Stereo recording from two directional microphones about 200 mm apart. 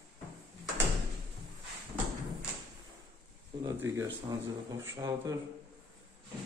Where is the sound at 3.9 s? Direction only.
15° right (ahead or behind).